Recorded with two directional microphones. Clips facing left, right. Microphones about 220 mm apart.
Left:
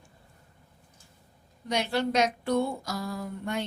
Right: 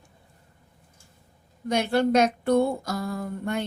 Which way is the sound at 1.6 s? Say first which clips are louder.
Right 5 dB; 50° right (ahead or behind).